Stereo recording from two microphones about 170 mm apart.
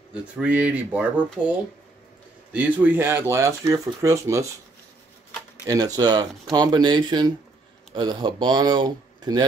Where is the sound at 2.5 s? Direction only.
10° right (ahead or behind).